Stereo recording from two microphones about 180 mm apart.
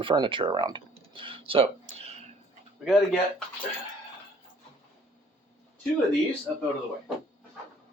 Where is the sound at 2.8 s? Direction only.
Centre (ahead or behind).